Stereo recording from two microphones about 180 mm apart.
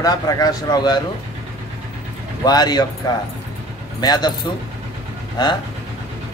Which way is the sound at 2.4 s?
20° left (ahead or behind).